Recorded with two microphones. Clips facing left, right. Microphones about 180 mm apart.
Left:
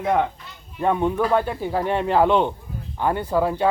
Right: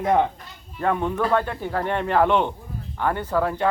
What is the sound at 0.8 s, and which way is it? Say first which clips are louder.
Speech: left 2 dB; 15° left (ahead or behind).